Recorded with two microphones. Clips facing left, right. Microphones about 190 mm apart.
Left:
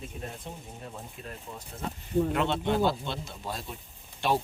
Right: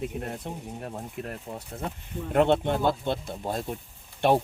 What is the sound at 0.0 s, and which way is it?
Speech, 65° right (ahead or behind).